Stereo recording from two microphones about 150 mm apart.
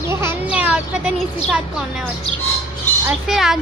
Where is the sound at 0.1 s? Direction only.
15° right (ahead or behind).